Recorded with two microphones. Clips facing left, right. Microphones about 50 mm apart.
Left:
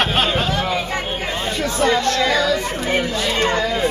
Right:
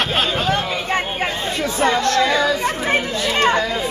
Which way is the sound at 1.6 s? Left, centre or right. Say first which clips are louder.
Even; right.